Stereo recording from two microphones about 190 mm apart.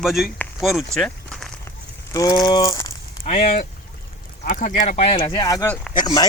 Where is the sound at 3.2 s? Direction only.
35° left (ahead or behind).